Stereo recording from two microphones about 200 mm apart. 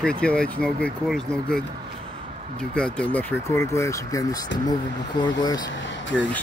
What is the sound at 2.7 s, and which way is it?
Speech, 5° left (ahead or behind).